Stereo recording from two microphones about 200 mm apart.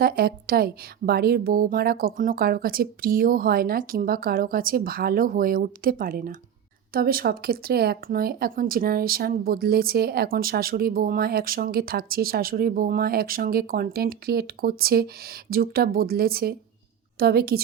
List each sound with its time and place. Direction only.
0.0 s speech: 50° right (ahead or behind)